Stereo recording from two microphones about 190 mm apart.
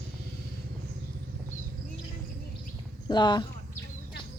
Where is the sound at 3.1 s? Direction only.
20° left (ahead or behind).